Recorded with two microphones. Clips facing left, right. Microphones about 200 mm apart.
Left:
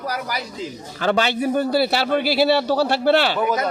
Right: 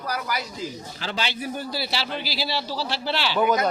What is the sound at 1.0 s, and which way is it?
A man's voice, 55° left (ahead or behind).